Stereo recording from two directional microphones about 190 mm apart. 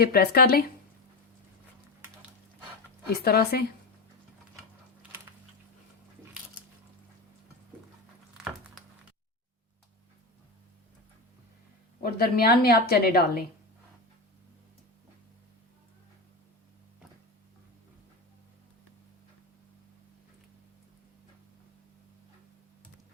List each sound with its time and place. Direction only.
0.0 s speech: 55° left (ahead or behind)
3.1 s speech: 55° left (ahead or behind)
12.0 s a woman's voice: 55° left (ahead or behind)